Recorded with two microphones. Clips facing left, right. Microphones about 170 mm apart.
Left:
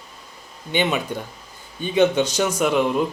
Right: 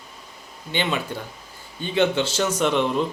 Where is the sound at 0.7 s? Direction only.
15° left (ahead or behind).